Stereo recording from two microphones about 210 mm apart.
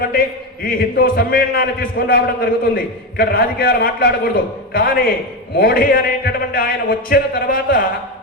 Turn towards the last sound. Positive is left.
turn(degrees=45)  # may be behind; listen again after turning